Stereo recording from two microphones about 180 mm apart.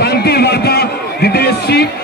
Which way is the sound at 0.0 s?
60° left (ahead or behind).